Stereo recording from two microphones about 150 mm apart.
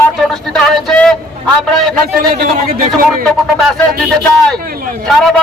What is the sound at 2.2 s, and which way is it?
Speech, 90° right.